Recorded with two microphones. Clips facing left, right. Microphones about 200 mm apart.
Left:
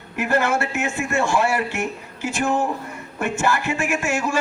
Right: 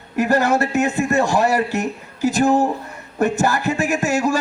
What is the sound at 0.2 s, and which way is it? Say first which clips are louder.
Speech: right 4 dB; 35° right (ahead or behind).